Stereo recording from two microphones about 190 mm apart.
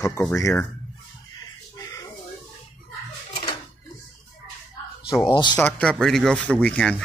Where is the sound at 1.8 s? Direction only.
15° left (ahead or behind).